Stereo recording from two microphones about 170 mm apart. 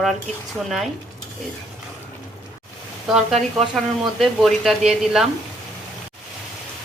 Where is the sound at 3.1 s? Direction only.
Centre (ahead or behind).